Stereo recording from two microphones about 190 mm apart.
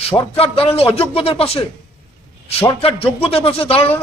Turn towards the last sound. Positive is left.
turn(degrees=30)  # may be behind; listen again after turning